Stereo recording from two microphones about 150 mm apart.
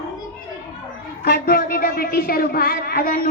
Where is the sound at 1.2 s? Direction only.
90° left.